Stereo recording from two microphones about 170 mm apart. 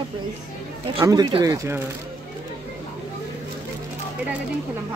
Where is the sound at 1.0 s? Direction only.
25° right (ahead or behind).